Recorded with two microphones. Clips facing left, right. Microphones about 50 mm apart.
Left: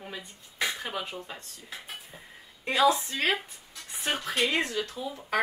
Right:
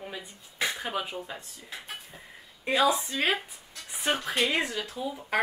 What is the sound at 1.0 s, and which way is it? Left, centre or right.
Speech, centre.